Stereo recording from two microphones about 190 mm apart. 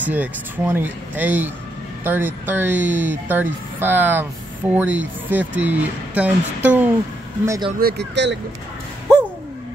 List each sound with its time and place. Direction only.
0.0 s speech: 10° right (ahead or behind)
7.8 s speech: 65° right (ahead or behind)